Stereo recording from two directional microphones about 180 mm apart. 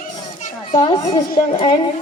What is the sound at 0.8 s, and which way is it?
A woman's voice, 25° left (ahead or behind).